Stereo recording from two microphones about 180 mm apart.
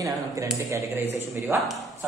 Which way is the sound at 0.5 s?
15° right (ahead or behind).